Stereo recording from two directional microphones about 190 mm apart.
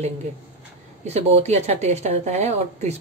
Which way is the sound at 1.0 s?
35° right (ahead or behind).